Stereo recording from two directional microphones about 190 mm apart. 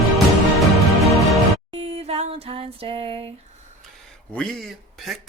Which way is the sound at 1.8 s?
30° right (ahead or behind).